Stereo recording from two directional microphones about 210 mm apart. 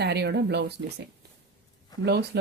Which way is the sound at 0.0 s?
50° right (ahead or behind).